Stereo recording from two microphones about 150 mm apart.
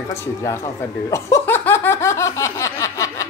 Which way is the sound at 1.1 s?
15° left (ahead or behind).